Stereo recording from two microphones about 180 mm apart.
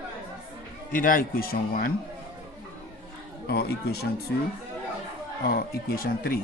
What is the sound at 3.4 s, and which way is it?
Speech, 60° left (ahead or behind).